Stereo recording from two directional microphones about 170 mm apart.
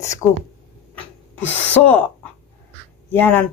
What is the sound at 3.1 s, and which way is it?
Speech, 10° left (ahead or behind).